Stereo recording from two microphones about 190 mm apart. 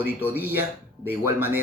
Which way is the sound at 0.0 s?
10° right (ahead or behind).